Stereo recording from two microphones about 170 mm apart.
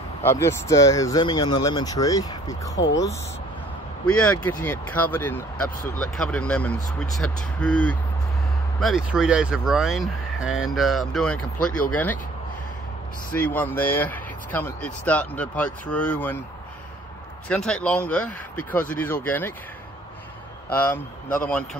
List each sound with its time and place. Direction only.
0.2 s speech: 15° left (ahead or behind)
4.5 s speech: 10° left (ahead or behind)
13.3 s speech: 10° left (ahead or behind)
17.5 s speech: 5° left (ahead or behind)
20.7 s speech: 15° left (ahead or behind)